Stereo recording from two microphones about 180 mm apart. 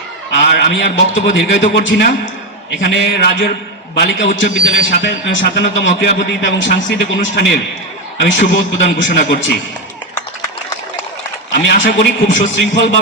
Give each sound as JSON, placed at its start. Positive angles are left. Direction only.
{"t": 0.3, "sound": "a man's voice", "side_deg": 80}
{"t": 12.3, "sound": "a man's voice", "side_deg": 90}